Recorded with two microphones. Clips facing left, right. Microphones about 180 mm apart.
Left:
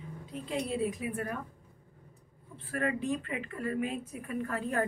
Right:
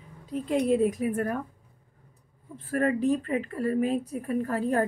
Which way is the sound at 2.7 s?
40° right (ahead or behind).